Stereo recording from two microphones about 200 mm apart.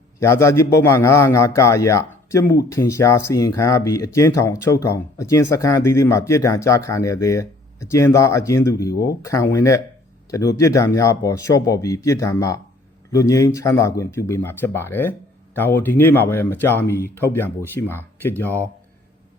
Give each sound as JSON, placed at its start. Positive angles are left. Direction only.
{"t": 0.2, "sound": "speech", "side_deg": 15}